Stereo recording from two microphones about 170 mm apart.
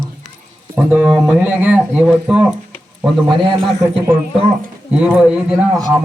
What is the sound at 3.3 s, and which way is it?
Speech, 30° right (ahead or behind).